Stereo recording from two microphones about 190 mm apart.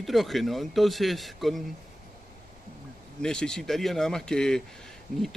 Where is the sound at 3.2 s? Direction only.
5° left (ahead or behind).